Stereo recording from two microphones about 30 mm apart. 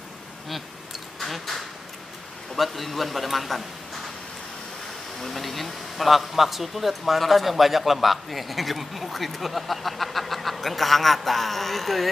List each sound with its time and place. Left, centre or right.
1.2 s duck: centre
2.5 s a man's voice: centre
5.2 s a man's voice: centre